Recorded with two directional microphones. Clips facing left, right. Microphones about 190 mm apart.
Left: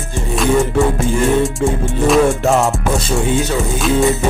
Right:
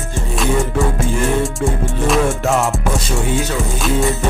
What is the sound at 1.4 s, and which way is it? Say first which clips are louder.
Music: left 3 dB; centre (ahead or behind).